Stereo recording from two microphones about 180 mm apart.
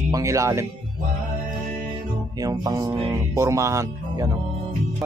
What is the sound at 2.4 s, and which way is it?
Speech, 20° right (ahead or behind).